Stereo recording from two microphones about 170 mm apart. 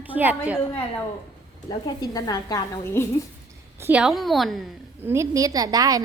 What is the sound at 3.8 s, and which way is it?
Speech, 5° right (ahead or behind).